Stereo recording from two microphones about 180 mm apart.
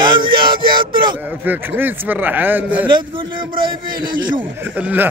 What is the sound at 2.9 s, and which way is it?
Speech, 25° right (ahead or behind).